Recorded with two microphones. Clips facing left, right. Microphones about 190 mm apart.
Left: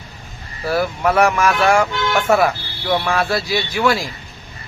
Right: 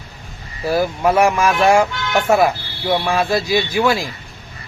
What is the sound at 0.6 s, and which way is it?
Speech, 15° right (ahead or behind).